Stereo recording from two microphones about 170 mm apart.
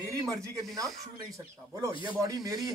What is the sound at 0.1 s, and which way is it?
A man's voice, 20° right (ahead or behind).